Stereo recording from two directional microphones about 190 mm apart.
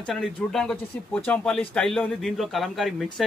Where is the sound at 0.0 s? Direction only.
Centre (ahead or behind).